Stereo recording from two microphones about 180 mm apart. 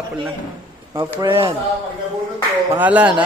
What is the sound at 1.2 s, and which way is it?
Speech, 25° right (ahead or behind).